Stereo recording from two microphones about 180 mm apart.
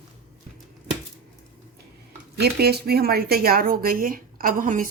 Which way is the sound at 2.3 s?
60° right (ahead or behind).